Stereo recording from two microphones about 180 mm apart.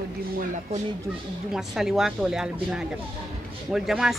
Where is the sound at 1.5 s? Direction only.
Centre (ahead or behind).